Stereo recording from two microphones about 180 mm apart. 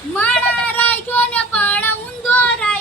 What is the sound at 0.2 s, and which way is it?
Child singing, 10° left (ahead or behind).